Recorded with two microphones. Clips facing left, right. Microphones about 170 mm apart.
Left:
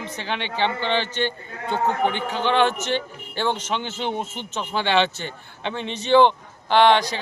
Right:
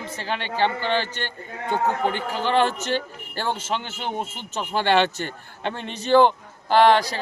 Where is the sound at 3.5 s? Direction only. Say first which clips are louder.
Left 1 dB; 5° right (ahead or behind).